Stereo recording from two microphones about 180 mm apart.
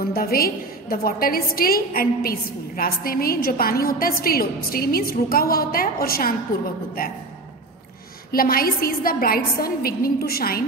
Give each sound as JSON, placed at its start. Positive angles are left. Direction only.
{"t": 0.0, "sound": "a woman's voice", "side_deg": 55}
{"t": 8.3, "sound": "a woman's voice", "side_deg": 55}